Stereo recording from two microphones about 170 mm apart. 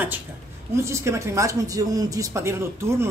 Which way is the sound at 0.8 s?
15° right (ahead or behind).